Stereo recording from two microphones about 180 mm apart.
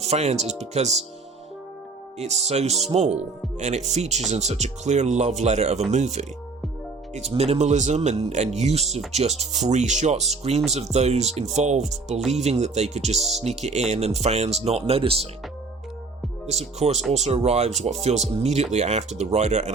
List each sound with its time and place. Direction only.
0.0 s speech: 35° right (ahead or behind)
2.1 s speech: 40° right (ahead or behind)
16.5 s speech: 35° right (ahead or behind)